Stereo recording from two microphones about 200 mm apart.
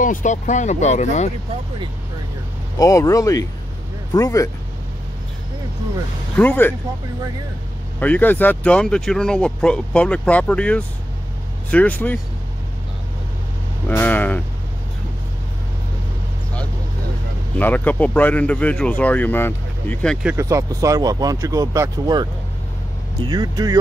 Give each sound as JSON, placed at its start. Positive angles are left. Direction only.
{"t": 0.0, "sound": "speech", "side_deg": 40}
{"t": 2.8, "sound": "speech", "side_deg": 15}
{"t": 6.3, "sound": "speech", "side_deg": 10}
{"t": 8.0, "sound": "speech", "side_deg": 10}
{"t": 13.8, "sound": "speech", "side_deg": 10}
{"t": 17.6, "sound": "speech", "side_deg": 10}
{"t": 20.2, "sound": "speech", "side_deg": -15}